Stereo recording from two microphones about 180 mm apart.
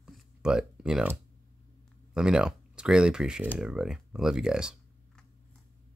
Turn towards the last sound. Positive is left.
turn(degrees=-5)  # may be behind; listen again after turning